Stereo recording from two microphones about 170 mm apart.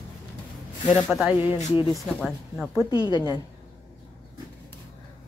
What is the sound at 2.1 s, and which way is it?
Speech, 5° left (ahead or behind).